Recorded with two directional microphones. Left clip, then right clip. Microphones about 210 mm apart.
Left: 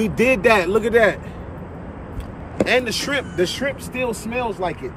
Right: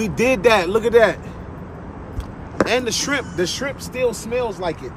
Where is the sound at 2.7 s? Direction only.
20° right (ahead or behind).